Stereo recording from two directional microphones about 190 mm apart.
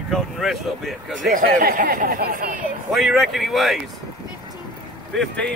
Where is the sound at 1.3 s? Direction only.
45° right (ahead or behind).